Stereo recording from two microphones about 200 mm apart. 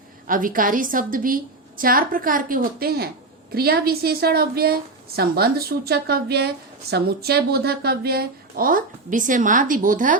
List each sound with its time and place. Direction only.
0.3 s a woman's voice: 45° right (ahead or behind)